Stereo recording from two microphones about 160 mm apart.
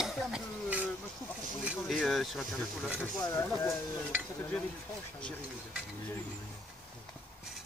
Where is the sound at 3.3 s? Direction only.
15° left (ahead or behind).